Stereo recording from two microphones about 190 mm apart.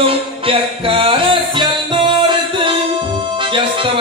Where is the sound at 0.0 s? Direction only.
30° right (ahead or behind).